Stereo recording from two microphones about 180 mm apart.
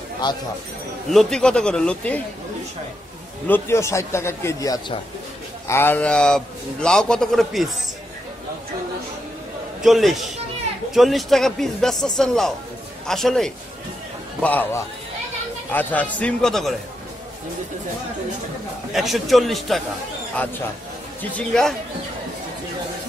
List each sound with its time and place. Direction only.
0.2 s speech: 25° left (ahead or behind)
1.1 s a man's voice: 5° left (ahead or behind)
3.4 s a man's voice: 10° left (ahead or behind)
9.8 s a man's voice: centre (ahead or behind)
18.9 s a man's voice: centre (ahead or behind)
21.2 s a man's voice: 5° left (ahead or behind)